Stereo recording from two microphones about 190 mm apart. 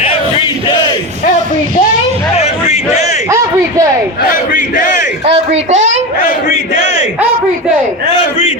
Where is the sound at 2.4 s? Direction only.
35° left (ahead or behind).